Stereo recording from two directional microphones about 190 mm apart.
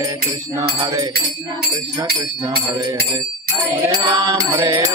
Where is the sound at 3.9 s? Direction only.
25° right (ahead or behind).